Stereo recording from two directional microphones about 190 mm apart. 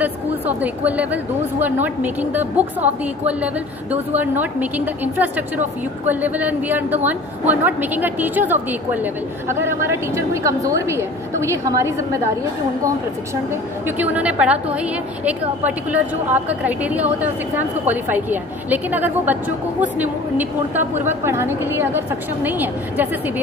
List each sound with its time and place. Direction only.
0.0 s a woman's voice: 10° right (ahead or behind)
4.1 s a woman's voice: 10° right (ahead or behind)
13.8 s a woman's voice: 10° right (ahead or behind)